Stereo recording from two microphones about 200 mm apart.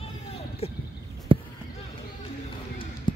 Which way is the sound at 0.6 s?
30° left (ahead or behind).